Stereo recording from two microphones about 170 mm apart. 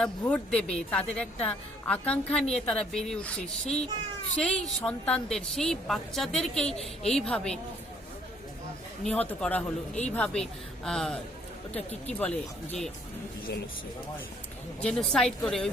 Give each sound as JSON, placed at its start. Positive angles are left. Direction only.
{"t": 0.0, "sound": "a woman's voice", "side_deg": 5}
{"t": 9.0, "sound": "a woman's voice", "side_deg": 10}
{"t": 11.8, "sound": "speech", "side_deg": 40}
{"t": 12.1, "sound": "speech", "side_deg": 5}
{"t": 14.8, "sound": "a woman's voice", "side_deg": 5}